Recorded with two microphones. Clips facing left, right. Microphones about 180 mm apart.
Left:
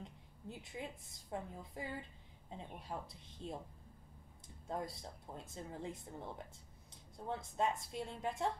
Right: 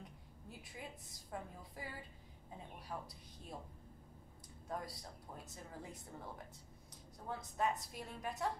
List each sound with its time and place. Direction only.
0.0 s a sound: 25° left (ahead or behind)
1.3 s speech: 25° left (ahead or behind)
4.6 s speech: 25° left (ahead or behind)